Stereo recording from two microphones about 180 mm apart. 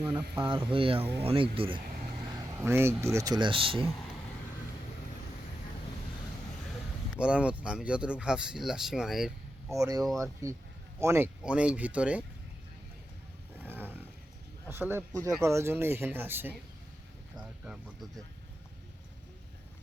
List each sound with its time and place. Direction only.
0.1 s speech: 15° right (ahead or behind)
0.4 s speech: 25° right (ahead or behind)
2.6 s speech: 15° right (ahead or behind); by 3.8 s 30° right (ahead or behind)
7.2 s speech: 5° right (ahead or behind)
9.6 s speech: 20° right (ahead or behind)
13.6 s roaring cats: 10° right (ahead or behind)
14.7 s speech: 10° right (ahead or behind)